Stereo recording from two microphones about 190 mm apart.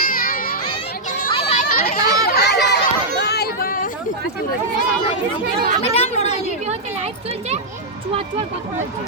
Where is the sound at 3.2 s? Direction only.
55° left (ahead or behind).